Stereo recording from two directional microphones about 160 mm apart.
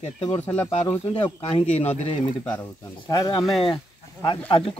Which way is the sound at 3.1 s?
25° left (ahead or behind).